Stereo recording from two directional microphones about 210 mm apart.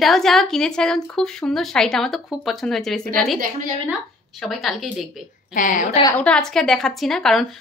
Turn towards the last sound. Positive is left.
turn(degrees=0)  # may be behind; listen again after turning